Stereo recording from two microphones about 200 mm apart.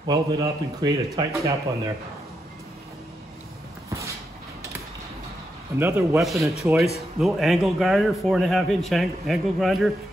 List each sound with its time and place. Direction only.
0.0 s speech: 20° right (ahead or behind)
5.8 s a man's voice: 10° right (ahead or behind)
6.1 s a man's voice: centre (ahead or behind)